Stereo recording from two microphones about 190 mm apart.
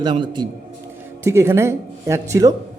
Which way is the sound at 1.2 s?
15° right (ahead or behind).